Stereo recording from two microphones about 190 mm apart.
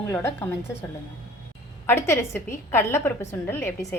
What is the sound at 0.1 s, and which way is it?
Speech, 10° left (ahead or behind).